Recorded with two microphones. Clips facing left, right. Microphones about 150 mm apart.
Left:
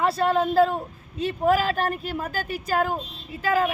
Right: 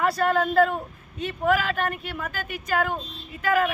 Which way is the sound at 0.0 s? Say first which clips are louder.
Left 1 dB; 25° left (ahead or behind).